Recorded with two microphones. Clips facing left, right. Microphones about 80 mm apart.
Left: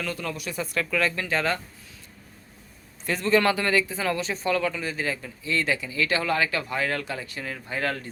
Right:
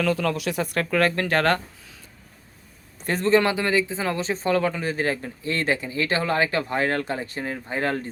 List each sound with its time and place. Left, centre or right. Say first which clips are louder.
0.0 s speech: right 8 dB; right
3.1 s speech: right 3 dB; right
3.4 s speech: right 1 dB; centre